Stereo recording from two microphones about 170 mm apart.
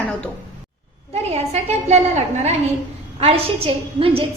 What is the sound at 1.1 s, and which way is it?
A woman's voice, 40° right (ahead or behind).